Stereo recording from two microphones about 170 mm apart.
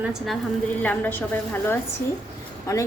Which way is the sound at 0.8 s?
10° left (ahead or behind).